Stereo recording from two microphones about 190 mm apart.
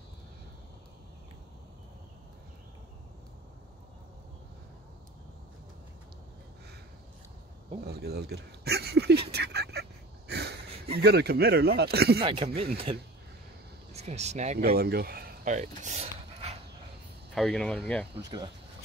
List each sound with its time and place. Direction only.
7.8 s speech: 60° right (ahead or behind)
9.3 s a sound: 60° right (ahead or behind)
11.0 s speech: 60° right (ahead or behind)
12.3 s speech: 30° right (ahead or behind)
14.8 s speech: 55° right (ahead or behind); by 16.5 s 35° right (ahead or behind)
17.3 s speech: centre (ahead or behind)
18.2 s speech: 25° right (ahead or behind)